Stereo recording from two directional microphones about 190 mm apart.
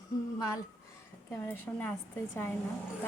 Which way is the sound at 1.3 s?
10° left (ahead or behind).